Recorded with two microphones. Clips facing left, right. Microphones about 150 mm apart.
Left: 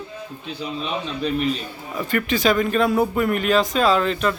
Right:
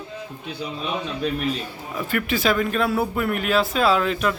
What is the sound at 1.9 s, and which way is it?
A man's voice, 5° right (ahead or behind).